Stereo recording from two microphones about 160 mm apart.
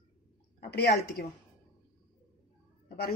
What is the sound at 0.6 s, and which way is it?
Speech, 90° left.